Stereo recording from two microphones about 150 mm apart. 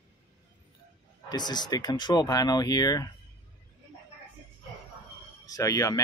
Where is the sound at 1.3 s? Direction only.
30° left (ahead or behind).